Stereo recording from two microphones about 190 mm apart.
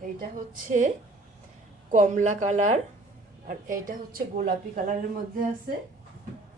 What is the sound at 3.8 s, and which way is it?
A woman's voice, 45° right (ahead or behind).